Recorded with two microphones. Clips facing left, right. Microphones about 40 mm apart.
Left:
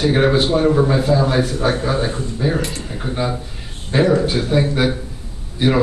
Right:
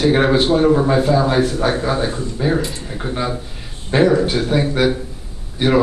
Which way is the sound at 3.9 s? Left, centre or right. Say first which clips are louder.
Right 2 dB; centre.